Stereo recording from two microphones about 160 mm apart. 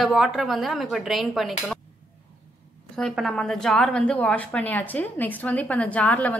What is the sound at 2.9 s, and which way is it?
A woman's voice, 5° left (ahead or behind).